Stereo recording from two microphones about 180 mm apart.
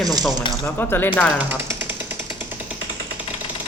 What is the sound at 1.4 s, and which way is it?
Jackhammer, 10° right (ahead or behind).